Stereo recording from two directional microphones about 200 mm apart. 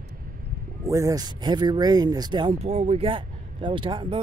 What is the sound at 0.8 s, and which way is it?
Speech, 15° right (ahead or behind).